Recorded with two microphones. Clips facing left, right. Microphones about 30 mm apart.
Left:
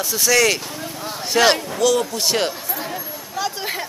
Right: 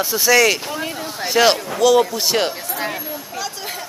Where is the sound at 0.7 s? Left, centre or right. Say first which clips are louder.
Right 5 dB; right.